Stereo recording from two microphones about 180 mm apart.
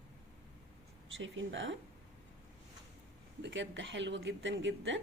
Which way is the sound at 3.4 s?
80° right.